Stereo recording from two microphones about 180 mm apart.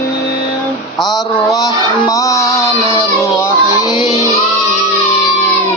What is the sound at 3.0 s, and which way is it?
Child singing, 20° left (ahead or behind).